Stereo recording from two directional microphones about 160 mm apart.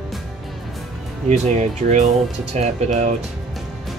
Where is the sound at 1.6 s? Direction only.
50° right (ahead or behind).